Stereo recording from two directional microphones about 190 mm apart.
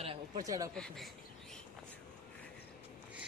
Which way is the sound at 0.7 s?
5° left (ahead or behind).